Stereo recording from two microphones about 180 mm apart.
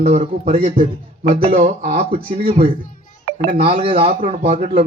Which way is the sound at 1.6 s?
55° right (ahead or behind).